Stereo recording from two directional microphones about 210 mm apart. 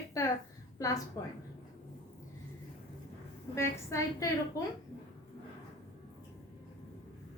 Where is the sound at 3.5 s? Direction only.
15° left (ahead or behind).